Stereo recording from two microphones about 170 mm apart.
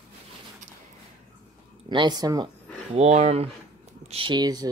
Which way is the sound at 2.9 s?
40° right (ahead or behind).